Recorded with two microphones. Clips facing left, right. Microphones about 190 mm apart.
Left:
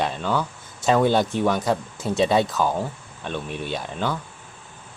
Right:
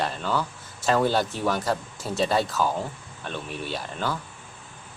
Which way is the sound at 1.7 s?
20° left (ahead or behind).